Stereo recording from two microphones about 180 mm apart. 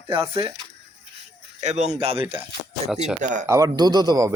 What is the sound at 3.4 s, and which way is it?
Speech, 15° right (ahead or behind).